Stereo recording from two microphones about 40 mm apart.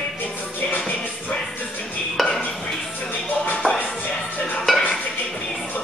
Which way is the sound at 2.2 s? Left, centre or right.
Centre.